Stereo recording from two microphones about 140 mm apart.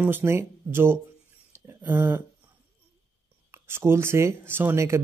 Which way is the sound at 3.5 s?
15° right (ahead or behind).